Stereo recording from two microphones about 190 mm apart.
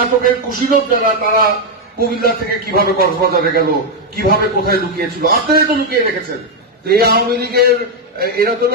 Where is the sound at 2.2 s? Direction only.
55° right (ahead or behind).